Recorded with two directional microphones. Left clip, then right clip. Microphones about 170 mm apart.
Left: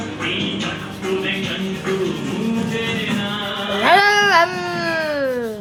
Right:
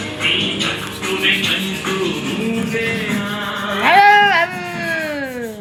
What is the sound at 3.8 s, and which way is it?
Baby cry, 30° left (ahead or behind).